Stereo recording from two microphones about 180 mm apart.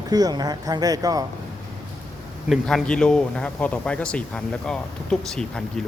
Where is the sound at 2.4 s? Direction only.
Centre (ahead or behind).